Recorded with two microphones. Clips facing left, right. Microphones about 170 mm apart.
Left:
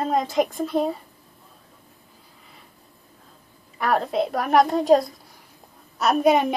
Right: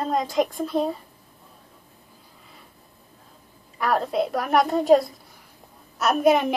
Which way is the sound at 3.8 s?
Centre (ahead or behind).